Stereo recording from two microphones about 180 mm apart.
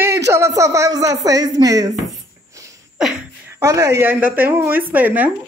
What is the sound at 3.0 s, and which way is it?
Speech, 5° right (ahead or behind).